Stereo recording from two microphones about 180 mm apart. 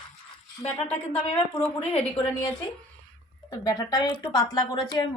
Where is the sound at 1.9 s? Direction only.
30° left (ahead or behind).